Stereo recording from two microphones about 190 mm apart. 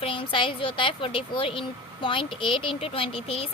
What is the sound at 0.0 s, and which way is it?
A woman's voice, 25° left (ahead or behind).